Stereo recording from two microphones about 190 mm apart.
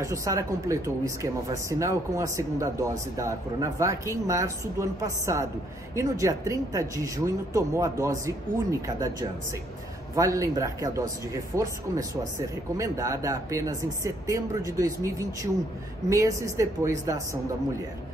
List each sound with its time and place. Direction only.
0.0 s speech: 15° right (ahead or behind)